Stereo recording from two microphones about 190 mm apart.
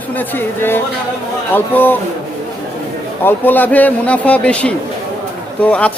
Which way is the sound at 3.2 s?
10° left (ahead or behind).